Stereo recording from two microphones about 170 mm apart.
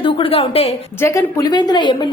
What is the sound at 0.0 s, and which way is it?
Speech, 35° left (ahead or behind).